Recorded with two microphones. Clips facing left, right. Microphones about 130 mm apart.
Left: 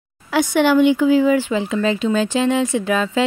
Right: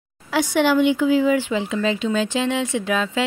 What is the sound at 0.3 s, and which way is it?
Speech, 55° left (ahead or behind).